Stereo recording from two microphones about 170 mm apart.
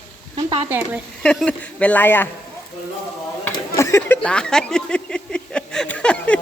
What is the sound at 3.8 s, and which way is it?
Speech, 15° left (ahead or behind).